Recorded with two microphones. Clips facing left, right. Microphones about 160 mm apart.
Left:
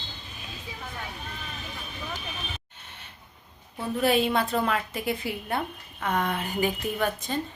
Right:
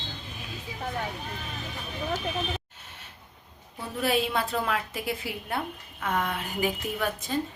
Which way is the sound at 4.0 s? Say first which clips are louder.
Left 3 dB; centre (ahead or behind).